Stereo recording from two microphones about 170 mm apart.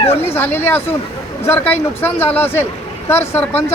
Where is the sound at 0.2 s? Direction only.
10° left (ahead or behind).